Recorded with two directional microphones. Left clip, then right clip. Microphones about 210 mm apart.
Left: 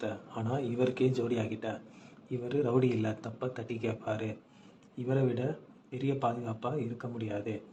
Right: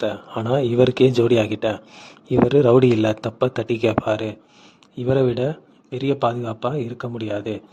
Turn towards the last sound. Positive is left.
turn(degrees=-55)  # may be behind; listen again after turning